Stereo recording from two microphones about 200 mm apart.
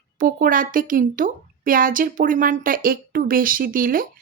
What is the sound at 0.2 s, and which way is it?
A woman's voice, 45° right (ahead or behind).